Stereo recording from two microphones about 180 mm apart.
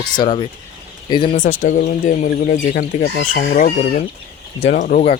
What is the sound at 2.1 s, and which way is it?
Speech, 45° left (ahead or behind).